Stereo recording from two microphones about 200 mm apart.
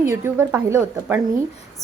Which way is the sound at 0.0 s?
10° right (ahead or behind).